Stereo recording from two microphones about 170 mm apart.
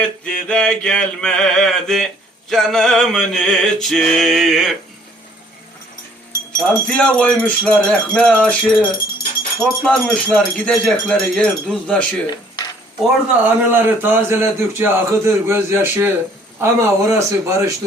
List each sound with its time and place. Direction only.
0.0 s male singing: 5° left (ahead or behind)
6.6 s jingle bell: 5° left (ahead or behind)
9.6 s male singing: 5° left (ahead or behind)
12.3 s dishes: 25° left (ahead or behind)
13.1 s a man's voice: 10° right (ahead or behind)